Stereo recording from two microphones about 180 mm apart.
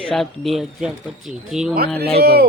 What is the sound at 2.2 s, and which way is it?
Speech, 60° right (ahead or behind).